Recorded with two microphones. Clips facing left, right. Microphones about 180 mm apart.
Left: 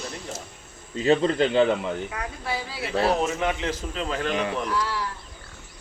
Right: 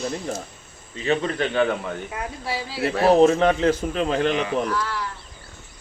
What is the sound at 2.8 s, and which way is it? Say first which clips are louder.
Speech: right 8 dB; 65° right (ahead or behind).